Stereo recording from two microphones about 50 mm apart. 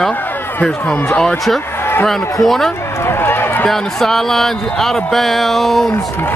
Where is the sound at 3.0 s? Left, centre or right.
Left.